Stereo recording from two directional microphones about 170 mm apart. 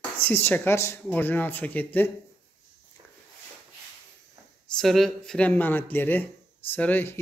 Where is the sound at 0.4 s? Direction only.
15° left (ahead or behind).